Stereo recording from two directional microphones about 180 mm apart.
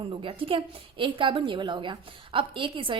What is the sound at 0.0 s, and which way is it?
A woman's voice, 30° right (ahead or behind).